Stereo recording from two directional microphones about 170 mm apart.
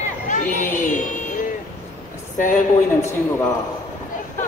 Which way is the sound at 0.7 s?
50° left (ahead or behind).